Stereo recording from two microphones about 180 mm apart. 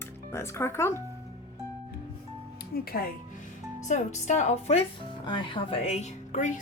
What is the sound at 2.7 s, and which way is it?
Speech, 55° left (ahead or behind).